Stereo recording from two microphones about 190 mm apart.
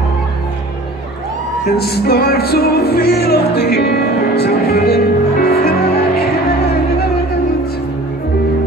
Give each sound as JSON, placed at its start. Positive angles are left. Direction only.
{"t": 1.8, "sound": "music", "side_deg": 55}